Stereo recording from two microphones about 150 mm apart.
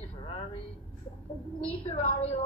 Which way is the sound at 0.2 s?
40° left (ahead or behind).